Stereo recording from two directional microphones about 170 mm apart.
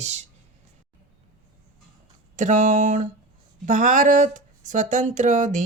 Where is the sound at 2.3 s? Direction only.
45° right (ahead or behind).